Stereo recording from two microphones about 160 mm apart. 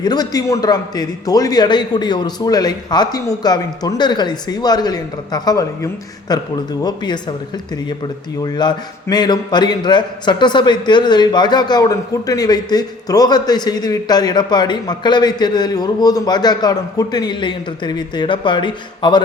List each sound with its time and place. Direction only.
0.0 s a man's voice: 25° left (ahead or behind)
8.4 s a man's voice: 25° left (ahead or behind)